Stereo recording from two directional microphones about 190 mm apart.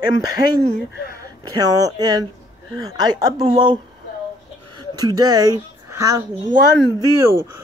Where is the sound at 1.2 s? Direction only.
20° right (ahead or behind).